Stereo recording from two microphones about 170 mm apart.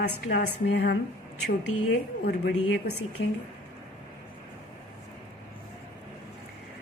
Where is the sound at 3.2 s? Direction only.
90° left.